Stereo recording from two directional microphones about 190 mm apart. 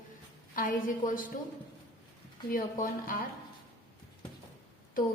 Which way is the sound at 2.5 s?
45° left (ahead or behind).